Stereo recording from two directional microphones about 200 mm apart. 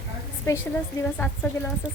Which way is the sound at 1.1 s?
5° left (ahead or behind).